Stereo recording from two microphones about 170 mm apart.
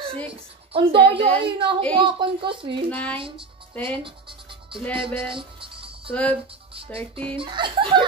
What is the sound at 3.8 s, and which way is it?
Speech, 30° right (ahead or behind).